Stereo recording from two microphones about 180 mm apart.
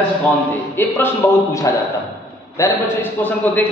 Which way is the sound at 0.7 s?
10° left (ahead or behind).